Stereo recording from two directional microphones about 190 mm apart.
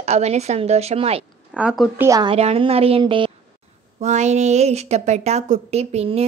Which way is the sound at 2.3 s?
30° right (ahead or behind).